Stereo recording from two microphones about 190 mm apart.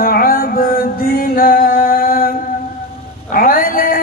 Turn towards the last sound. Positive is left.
turn(degrees=45)  # may be behind; listen again after turning